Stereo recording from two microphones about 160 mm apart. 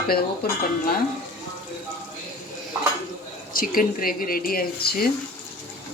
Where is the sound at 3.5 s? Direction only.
60° left (ahead or behind).